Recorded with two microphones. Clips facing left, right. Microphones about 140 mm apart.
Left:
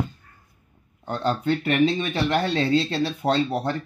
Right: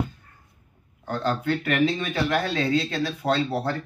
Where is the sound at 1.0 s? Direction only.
20° left (ahead or behind).